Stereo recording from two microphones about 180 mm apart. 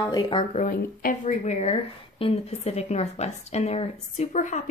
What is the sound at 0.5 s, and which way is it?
A woman's voice, 45° left (ahead or behind).